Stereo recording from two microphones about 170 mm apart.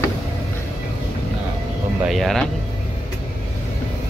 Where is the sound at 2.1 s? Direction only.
Centre (ahead or behind).